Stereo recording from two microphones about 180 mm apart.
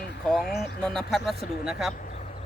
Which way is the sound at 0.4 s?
65° left (ahead or behind).